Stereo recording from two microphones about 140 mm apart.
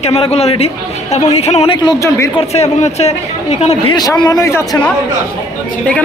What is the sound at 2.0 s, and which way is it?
Speech, 20° left (ahead or behind).